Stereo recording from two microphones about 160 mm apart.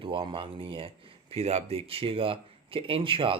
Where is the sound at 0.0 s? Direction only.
35° right (ahead or behind).